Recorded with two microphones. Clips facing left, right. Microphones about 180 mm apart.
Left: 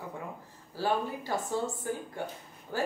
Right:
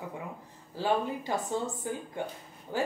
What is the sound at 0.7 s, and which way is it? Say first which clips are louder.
Speech: right 1 dB; 20° right (ahead or behind).